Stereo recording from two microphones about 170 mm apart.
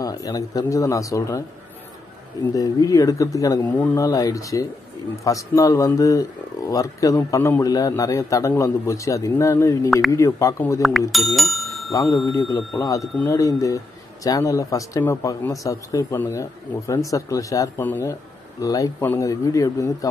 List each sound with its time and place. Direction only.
0.0 s speech: 20° left (ahead or behind)
2.5 s speech: 20° left (ahead or behind)
10.8 s speech: centre (ahead or behind)
11.9 s speech: 20° left (ahead or behind)